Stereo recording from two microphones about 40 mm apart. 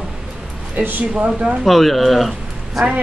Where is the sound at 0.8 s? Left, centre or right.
Right.